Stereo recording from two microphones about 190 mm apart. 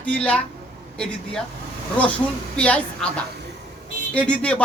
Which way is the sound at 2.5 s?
5° left (ahead or behind).